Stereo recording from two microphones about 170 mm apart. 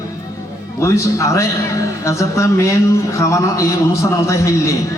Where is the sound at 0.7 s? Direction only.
15° left (ahead or behind).